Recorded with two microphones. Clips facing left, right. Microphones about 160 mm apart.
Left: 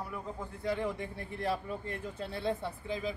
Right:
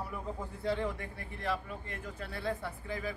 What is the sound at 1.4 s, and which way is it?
Speech, 35° left (ahead or behind).